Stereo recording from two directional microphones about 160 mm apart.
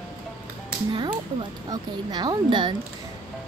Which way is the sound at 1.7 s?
25° right (ahead or behind).